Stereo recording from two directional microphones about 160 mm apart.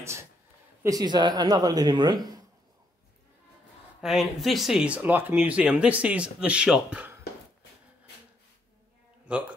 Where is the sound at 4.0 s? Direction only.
Centre (ahead or behind).